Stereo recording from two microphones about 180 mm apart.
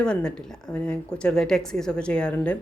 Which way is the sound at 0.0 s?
5° left (ahead or behind).